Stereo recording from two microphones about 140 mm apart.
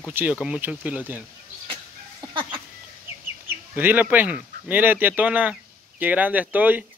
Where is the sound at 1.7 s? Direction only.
35° right (ahead or behind).